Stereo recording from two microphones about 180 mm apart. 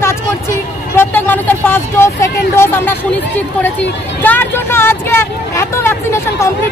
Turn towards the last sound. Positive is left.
turn(degrees=15)  # may be behind; listen again after turning